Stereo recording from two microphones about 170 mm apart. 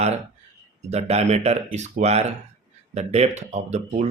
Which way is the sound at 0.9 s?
40° right (ahead or behind).